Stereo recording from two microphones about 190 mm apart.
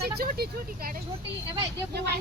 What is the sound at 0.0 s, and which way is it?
A woman's voice, 55° right (ahead or behind).